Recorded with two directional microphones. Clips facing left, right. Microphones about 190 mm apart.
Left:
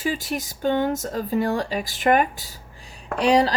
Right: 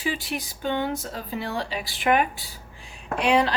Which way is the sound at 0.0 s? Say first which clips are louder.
Left 3 dB; 45° left (ahead or behind).